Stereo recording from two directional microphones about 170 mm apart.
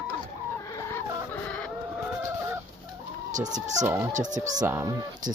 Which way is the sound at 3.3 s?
45° right (ahead or behind).